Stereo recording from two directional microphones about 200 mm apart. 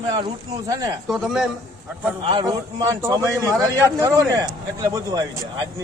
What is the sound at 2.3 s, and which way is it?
A man's voice, 20° right (ahead or behind).